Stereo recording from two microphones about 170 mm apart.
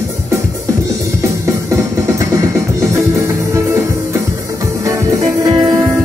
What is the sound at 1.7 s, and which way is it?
Music, 20° right (ahead or behind).